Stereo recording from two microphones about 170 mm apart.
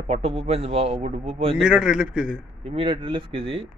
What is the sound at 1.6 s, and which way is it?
Speech, 5° right (ahead or behind).